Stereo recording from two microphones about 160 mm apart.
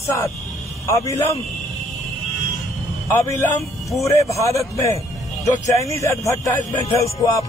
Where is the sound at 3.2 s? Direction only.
20° left (ahead or behind).